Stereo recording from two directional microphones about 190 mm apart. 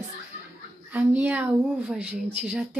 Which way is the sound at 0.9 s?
10° right (ahead or behind).